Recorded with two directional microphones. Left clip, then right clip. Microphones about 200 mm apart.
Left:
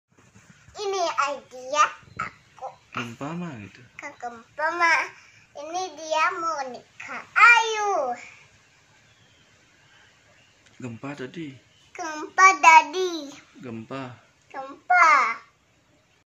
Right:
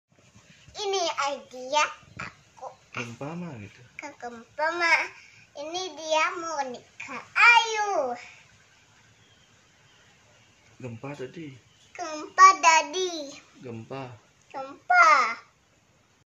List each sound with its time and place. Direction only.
0.7 s babbling: 5° right (ahead or behind)
3.2 s speech: 30° left (ahead or behind)
4.0 s a child's voice: 5° right (ahead or behind)
10.8 s speech: 30° left (ahead or behind)
11.9 s a child's voice: centre (ahead or behind)
13.7 s speech: 25° left (ahead or behind)
14.5 s a child's voice: 5° right (ahead or behind)